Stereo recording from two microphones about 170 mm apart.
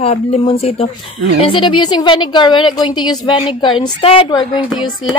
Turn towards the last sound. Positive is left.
turn(degrees=30)  # may be behind; listen again after turning